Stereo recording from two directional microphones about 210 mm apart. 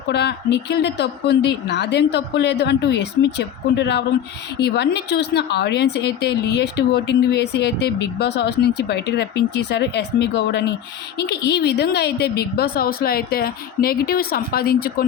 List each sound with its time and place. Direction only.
0.1 s a woman's voice: 55° left (ahead or behind)